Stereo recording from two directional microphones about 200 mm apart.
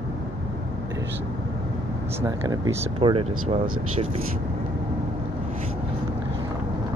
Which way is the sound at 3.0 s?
25° right (ahead or behind).